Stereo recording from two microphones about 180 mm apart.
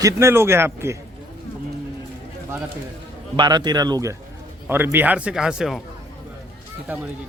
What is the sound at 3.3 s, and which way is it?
A man's voice, 25° right (ahead or behind).